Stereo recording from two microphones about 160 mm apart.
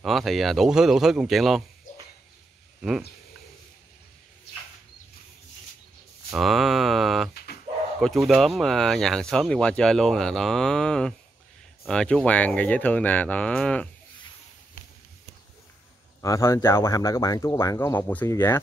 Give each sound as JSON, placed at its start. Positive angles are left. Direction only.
{"t": 0.0, "sound": "speech", "side_deg": 0}
{"t": 1.9, "sound": "a sound", "side_deg": 55}
{"t": 6.3, "sound": "speech", "side_deg": 0}
{"t": 16.2, "sound": "speech", "side_deg": 20}